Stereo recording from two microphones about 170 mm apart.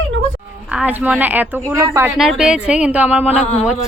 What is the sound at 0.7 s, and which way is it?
Speech, 10° right (ahead or behind).